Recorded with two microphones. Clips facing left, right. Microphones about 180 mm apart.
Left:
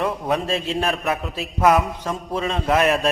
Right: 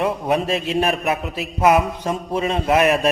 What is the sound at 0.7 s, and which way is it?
Speech, 10° right (ahead or behind).